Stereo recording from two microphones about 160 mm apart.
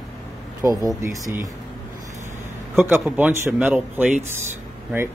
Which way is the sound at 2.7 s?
10° right (ahead or behind).